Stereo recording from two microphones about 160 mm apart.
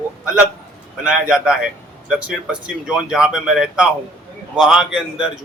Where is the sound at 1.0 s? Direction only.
5° right (ahead or behind).